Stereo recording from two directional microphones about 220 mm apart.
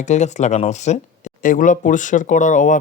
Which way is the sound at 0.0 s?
30° left (ahead or behind).